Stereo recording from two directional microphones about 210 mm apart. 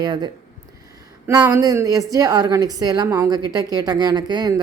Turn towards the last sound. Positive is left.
turn(degrees=-20)  # may be behind; listen again after turning